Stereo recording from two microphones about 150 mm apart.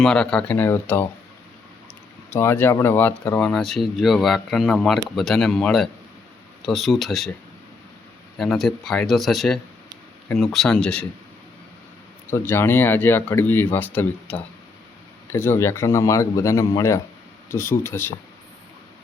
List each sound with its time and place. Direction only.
0.0 s speech: 5° left (ahead or behind)
2.3 s speech: 15° left (ahead or behind)
8.4 s speech: centre (ahead or behind)
12.3 s a man's voice: 15° left (ahead or behind)